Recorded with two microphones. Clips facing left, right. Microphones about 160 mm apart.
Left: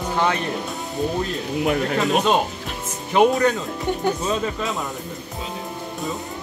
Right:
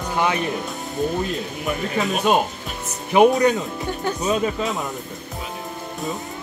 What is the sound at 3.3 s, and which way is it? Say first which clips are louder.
Speech: right 2 dB; 15° right (ahead or behind).